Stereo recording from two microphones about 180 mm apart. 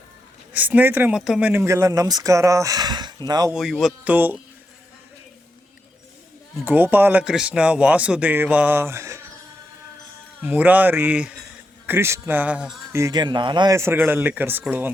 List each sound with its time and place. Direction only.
0.5 s speech: 10° right (ahead or behind)
3.5 s speech: centre (ahead or behind)
6.7 s speech: 10° right (ahead or behind)
10.4 s speech: 10° right (ahead or behind)
12.9 s speech: 20° right (ahead or behind)